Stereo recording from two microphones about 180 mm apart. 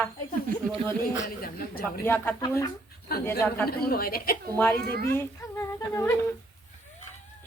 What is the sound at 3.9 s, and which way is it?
Speech, 55° left (ahead or behind).